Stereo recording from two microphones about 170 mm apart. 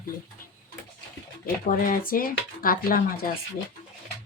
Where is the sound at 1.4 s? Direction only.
55° left (ahead or behind).